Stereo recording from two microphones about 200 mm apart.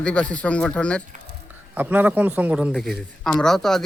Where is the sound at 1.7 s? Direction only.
10° right (ahead or behind).